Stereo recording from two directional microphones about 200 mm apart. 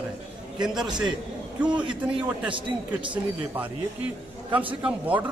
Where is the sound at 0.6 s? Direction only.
5° right (ahead or behind).